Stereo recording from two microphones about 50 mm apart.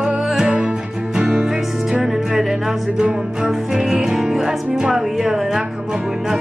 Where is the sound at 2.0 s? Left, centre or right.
Centre.